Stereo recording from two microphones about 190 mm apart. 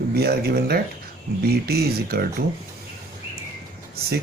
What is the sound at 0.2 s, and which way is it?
Speech, 55° right (ahead or behind).